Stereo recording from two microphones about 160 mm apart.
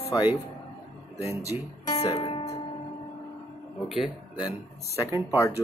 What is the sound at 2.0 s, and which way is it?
Speech, 40° left (ahead or behind).